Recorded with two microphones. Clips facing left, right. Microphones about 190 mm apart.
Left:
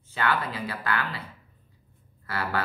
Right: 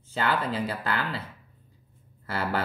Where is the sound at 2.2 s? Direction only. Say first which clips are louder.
Right 1 dB; 25° right (ahead or behind).